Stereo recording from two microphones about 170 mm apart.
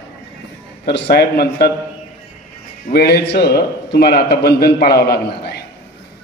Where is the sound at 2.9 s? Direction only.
70° left (ahead or behind).